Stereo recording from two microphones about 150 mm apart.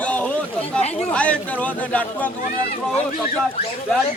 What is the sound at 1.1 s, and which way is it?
Speech, 10° left (ahead or behind).